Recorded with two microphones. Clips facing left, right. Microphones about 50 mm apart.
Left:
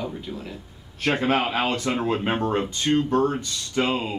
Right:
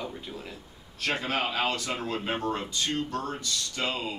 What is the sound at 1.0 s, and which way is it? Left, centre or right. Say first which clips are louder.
Speech: left 7 dB; left.